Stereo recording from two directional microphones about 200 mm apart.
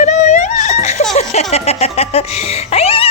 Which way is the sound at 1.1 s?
35° left (ahead or behind).